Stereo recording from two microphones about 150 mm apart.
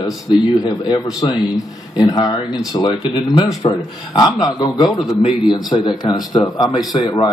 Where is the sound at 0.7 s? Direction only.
30° left (ahead or behind).